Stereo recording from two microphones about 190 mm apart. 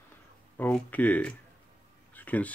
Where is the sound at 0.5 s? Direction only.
10° left (ahead or behind).